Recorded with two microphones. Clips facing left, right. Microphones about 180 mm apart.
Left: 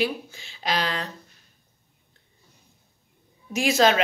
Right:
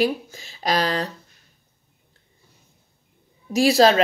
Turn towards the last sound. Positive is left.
turn(degrees=-35)  # may be behind; listen again after turning